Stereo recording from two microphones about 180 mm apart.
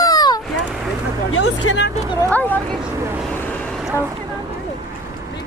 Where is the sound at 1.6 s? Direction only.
90° left.